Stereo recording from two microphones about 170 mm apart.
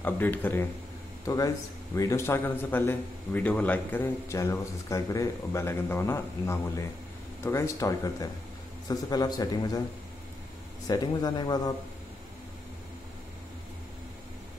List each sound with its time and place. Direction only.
0.0 s a man's voice: 10° left (ahead or behind)
10.9 s a man's voice: 25° left (ahead or behind)